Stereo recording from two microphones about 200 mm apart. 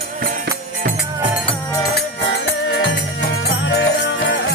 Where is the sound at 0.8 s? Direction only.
40° right (ahead or behind).